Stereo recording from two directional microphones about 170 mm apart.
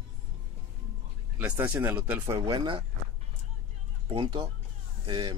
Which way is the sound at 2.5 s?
25° right (ahead or behind).